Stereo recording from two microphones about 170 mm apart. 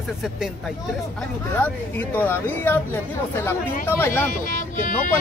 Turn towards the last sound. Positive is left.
turn(degrees=50)  # may be behind; listen again after turning